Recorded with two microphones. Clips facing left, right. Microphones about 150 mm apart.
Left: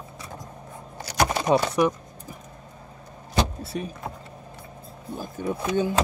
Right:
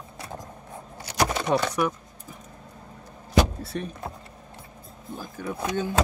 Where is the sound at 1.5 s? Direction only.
15° left (ahead or behind).